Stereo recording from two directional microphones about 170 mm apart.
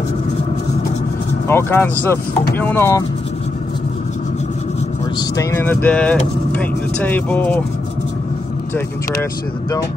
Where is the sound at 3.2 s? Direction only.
40° left (ahead or behind).